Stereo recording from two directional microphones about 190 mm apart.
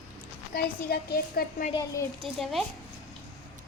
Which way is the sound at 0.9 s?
55° left (ahead or behind).